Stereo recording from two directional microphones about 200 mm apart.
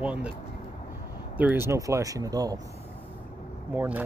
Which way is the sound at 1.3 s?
10° right (ahead or behind).